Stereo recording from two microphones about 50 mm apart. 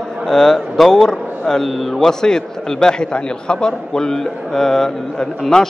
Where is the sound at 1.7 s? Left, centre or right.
Centre.